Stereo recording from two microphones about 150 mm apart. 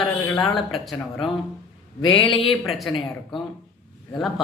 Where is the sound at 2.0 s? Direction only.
35° left (ahead or behind).